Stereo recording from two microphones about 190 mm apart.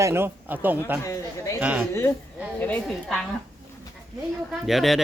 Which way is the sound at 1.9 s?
15° left (ahead or behind).